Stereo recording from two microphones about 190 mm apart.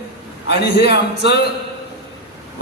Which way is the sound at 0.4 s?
60° left (ahead or behind).